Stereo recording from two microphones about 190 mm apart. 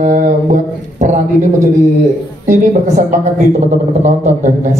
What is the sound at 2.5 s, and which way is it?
A man's voice, 40° right (ahead or behind).